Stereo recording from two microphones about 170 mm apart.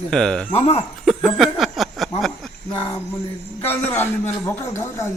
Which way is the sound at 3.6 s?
10° left (ahead or behind).